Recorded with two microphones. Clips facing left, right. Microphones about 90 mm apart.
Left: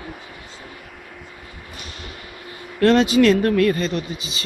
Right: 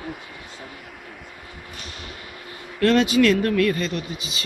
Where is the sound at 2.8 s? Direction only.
30° left (ahead or behind).